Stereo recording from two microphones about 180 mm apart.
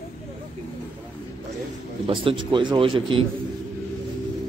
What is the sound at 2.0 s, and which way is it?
A man's voice, 30° right (ahead or behind).